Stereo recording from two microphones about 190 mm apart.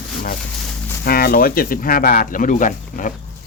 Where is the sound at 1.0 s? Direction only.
50° left (ahead or behind).